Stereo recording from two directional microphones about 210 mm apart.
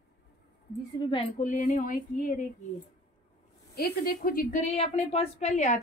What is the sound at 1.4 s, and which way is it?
Speech, 40° left (ahead or behind).